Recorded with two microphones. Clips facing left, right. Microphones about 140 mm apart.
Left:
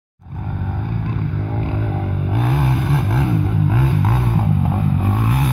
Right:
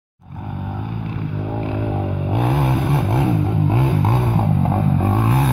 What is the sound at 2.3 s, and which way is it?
Vehicle, 20° right (ahead or behind).